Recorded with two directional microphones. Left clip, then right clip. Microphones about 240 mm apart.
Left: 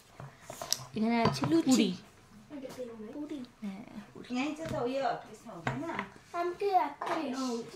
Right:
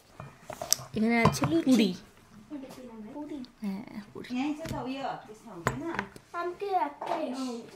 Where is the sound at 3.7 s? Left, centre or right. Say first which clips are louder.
Right 5 dB; right.